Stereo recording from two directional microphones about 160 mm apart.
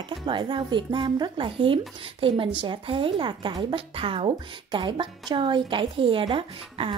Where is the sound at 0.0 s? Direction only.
30° right (ahead or behind).